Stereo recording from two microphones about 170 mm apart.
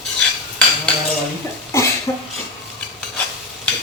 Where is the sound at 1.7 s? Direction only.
15° left (ahead or behind).